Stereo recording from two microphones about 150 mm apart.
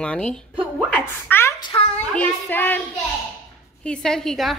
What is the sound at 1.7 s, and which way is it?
Speech, 30° left (ahead or behind).